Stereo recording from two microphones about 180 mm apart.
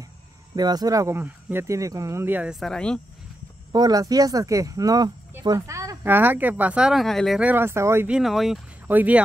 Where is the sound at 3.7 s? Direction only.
20° right (ahead or behind).